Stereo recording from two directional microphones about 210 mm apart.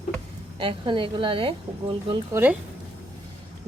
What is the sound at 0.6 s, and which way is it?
A woman's voice, 25° right (ahead or behind).